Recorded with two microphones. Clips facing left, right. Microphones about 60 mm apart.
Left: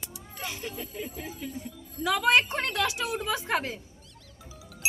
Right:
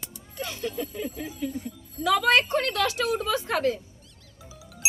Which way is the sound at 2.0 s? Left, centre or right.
Centre.